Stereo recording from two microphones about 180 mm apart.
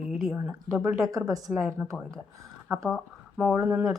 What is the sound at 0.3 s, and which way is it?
Speech, 15° right (ahead or behind).